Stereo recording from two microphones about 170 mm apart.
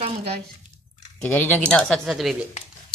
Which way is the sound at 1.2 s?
10° left (ahead or behind).